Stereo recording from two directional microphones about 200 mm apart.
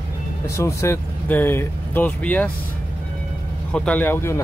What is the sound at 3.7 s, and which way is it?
Speech, 5° left (ahead or behind).